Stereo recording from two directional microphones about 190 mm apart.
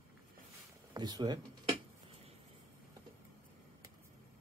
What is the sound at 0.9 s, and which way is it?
Speech, 20° right (ahead or behind).